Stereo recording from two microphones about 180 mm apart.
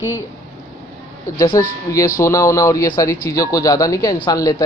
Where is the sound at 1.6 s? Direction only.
15° left (ahead or behind).